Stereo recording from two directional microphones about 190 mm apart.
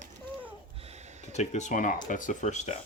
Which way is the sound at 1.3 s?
35° left (ahead or behind).